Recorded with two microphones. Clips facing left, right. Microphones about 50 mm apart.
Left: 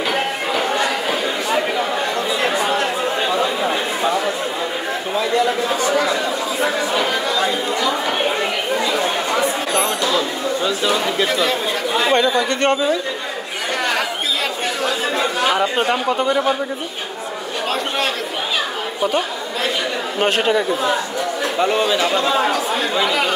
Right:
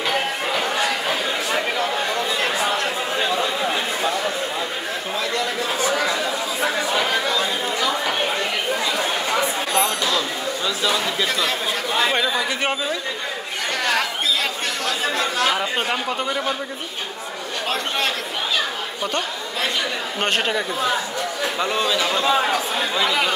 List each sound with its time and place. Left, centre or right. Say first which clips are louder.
0.1 s a sound: left 2 dB; centre
3.3 s a sound: left 3 dB; centre
5.8 s speech: left 3 dB; centre
8.8 s chatter: left 3 dB; centre
9.8 s a sound: left 2 dB; centre
11.2 s speech: left 4 dB; centre
15.1 s speech: left 4 dB; centre
20.2 s speech: left 5 dB; centre
21.7 s speech: left 4 dB; centre